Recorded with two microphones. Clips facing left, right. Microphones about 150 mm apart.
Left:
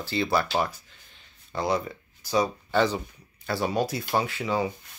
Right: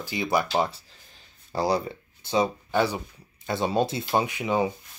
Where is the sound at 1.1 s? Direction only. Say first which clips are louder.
Right 3 dB; 35° right (ahead or behind).